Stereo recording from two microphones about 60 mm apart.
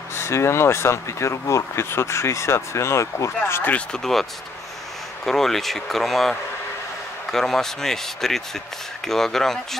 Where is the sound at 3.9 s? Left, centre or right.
Centre.